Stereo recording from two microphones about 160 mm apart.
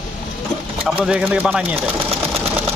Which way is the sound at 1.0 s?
10° right (ahead or behind).